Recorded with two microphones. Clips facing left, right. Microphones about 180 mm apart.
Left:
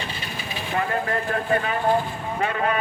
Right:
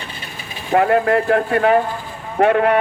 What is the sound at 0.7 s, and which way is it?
Speech, 60° right (ahead or behind).